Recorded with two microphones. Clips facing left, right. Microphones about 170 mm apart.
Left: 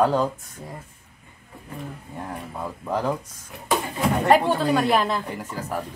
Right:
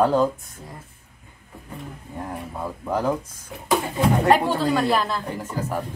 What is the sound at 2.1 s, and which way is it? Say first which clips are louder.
Speech: right 2 dB; 5° right (ahead or behind).